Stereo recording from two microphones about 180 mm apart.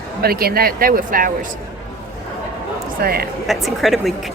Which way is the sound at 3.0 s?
55° right (ahead or behind).